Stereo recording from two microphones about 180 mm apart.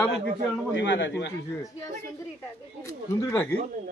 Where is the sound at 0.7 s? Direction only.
85° left.